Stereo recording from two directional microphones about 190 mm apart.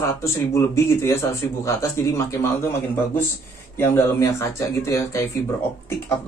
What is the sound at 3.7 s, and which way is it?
Speech, 10° left (ahead or behind).